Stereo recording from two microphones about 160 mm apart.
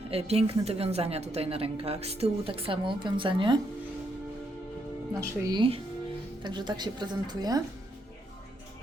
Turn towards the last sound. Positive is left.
turn(degrees=-25)  # may be behind; listen again after turning